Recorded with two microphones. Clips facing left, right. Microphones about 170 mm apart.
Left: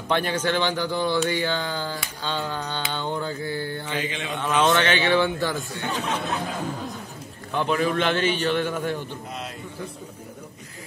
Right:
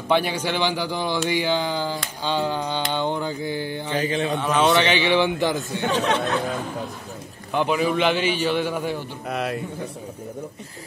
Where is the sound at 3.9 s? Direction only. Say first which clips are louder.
Right 10 dB; 40° right (ahead or behind).